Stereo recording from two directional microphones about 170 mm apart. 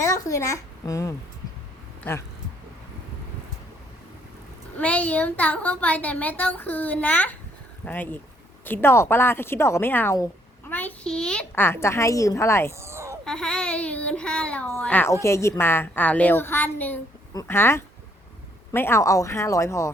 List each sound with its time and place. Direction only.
0.0 s a woman's voice: 20° left (ahead or behind)
4.8 s a woman's voice: 10° left (ahead or behind)
12.8 s a sound: 15° right (ahead or behind)
13.2 s a woman's voice: 5° left (ahead or behind)